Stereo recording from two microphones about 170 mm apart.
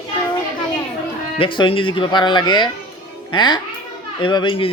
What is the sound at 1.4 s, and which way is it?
Speech, 30° left (ahead or behind).